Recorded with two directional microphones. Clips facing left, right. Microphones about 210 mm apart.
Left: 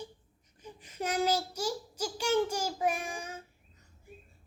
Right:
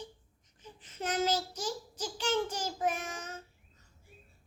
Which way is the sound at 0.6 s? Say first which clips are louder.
Left 2 dB; 10° left (ahead or behind).